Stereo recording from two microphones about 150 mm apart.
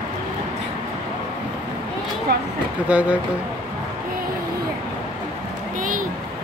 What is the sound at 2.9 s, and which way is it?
Speech, 10° right (ahead or behind).